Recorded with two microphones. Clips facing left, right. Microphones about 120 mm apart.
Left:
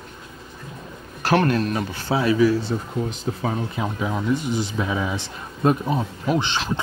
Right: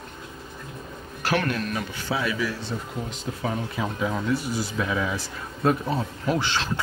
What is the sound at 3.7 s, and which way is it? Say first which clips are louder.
Speech: left 1 dB; 20° left (ahead or behind).